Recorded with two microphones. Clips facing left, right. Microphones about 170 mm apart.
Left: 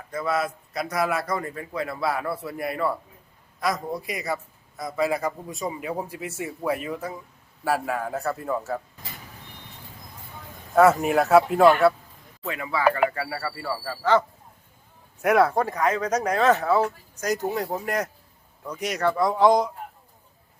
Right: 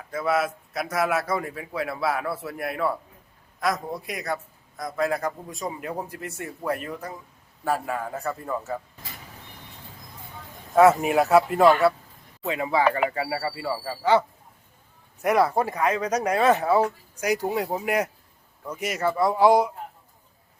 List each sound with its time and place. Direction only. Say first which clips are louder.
0.1 s a man's voice: right 2 dB; 5° right (ahead or behind)
10.8 s a man's voice: right 1 dB; centre (ahead or behind)
12.5 s speech: right 1 dB; 25° right (ahead or behind)
15.2 s a man's voice: left 1 dB; centre (ahead or behind)
15.6 s a man's voice: even; 10° right (ahead or behind)